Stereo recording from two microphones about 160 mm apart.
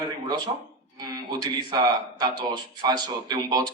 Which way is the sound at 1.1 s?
25° right (ahead or behind).